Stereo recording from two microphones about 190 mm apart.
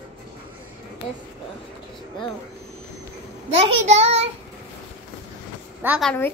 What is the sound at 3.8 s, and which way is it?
Speech, 35° right (ahead or behind).